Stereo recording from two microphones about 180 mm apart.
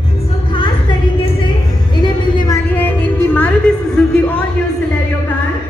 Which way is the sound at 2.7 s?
10° left (ahead or behind).